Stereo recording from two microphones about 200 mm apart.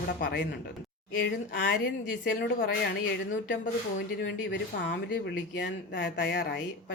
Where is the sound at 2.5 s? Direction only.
55° left (ahead or behind).